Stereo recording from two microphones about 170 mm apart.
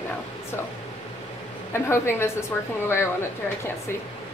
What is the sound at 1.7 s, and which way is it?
Speech, 15° left (ahead or behind).